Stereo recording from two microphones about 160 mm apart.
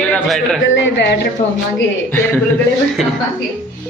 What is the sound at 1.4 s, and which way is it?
Speech, 30° left (ahead or behind).